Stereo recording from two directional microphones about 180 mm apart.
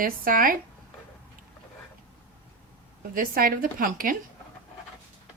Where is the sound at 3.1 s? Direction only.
50° right (ahead or behind).